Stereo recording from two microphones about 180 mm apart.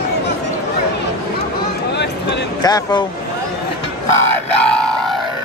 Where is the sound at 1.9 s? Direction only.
70° left (ahead or behind).